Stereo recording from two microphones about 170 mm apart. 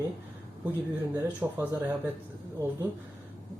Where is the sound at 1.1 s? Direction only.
10° right (ahead or behind).